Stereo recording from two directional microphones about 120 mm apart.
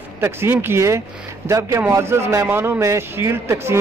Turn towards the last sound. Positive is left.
turn(degrees=-20)  # may be behind; listen again after turning